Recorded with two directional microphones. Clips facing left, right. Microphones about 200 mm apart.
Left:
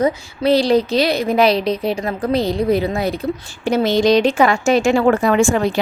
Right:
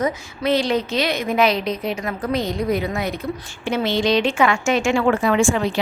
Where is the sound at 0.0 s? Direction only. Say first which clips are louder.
Left 5 dB; 35° left (ahead or behind).